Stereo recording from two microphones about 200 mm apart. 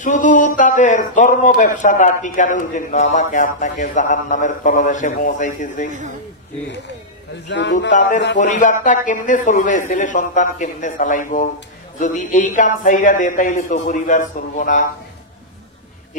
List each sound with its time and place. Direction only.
0.0 s a man's voice: 40° left (ahead or behind)
5.9 s a man's voice: 40° right (ahead or behind)
7.4 s speech: 60° left (ahead or behind)
8.4 s a man's voice: 40° left (ahead or behind)